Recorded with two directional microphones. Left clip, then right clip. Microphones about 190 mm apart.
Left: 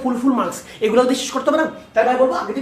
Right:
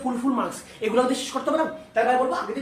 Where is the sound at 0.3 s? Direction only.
20° left (ahead or behind).